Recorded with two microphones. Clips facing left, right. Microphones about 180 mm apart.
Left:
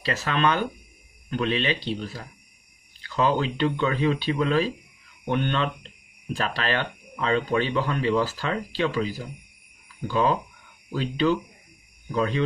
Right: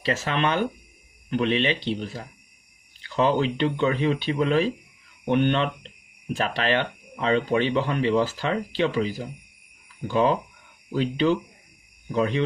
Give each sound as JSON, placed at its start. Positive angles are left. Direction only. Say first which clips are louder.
{"t": 0.0, "sound": "speech", "louder": "even", "side_deg": -25}